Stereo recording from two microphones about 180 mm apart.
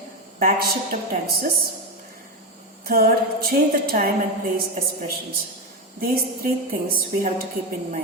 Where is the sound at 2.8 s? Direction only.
55° right (ahead or behind).